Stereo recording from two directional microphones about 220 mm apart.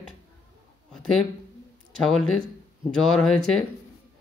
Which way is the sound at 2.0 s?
5° left (ahead or behind).